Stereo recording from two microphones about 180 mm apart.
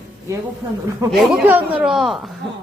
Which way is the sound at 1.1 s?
Centre (ahead or behind).